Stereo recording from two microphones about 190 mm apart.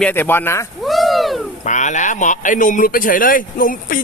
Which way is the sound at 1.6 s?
40° left (ahead or behind).